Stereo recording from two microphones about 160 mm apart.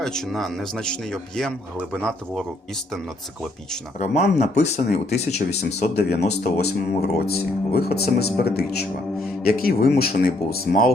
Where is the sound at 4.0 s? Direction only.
45° left (ahead or behind).